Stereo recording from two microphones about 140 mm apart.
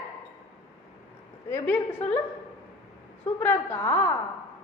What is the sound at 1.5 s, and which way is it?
Speech, 10° left (ahead or behind).